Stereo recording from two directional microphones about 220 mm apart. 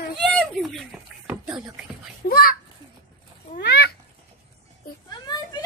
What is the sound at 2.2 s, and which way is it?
Children playing, 40° left (ahead or behind).